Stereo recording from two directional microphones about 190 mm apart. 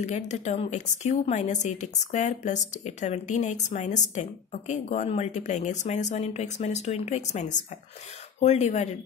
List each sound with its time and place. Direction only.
0.0 s a woman's voice: 35° left (ahead or behind)